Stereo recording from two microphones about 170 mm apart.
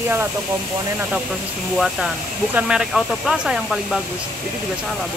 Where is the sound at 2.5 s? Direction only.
5° right (ahead or behind).